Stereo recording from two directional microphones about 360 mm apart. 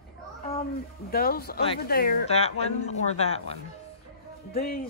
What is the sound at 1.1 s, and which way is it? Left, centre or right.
Speech, left.